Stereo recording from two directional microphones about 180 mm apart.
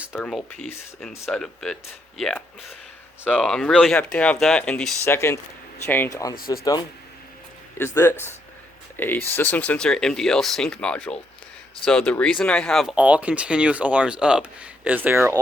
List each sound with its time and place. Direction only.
0.0 s speech: centre (ahead or behind); by 7.9 s 15° left (ahead or behind)
9.0 s speech: 10° left (ahead or behind); by 15.4 s 15° right (ahead or behind)